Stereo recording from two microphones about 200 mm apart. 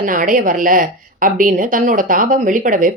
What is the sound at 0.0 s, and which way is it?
A woman's voice, 40° right (ahead or behind).